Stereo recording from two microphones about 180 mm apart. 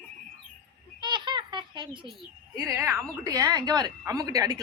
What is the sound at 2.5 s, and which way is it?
A woman's voice, 15° right (ahead or behind).